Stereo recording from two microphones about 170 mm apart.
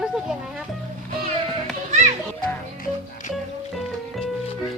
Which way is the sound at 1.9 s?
45° right (ahead or behind).